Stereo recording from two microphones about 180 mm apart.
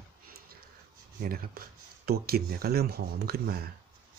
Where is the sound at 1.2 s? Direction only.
55° right (ahead or behind).